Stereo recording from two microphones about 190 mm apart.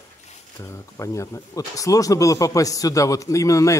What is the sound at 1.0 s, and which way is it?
A man's voice, 15° left (ahead or behind).